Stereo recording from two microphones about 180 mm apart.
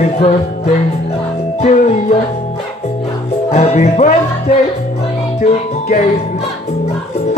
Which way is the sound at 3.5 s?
35° left (ahead or behind).